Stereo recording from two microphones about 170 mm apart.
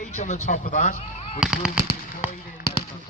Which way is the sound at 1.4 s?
5° right (ahead or behind).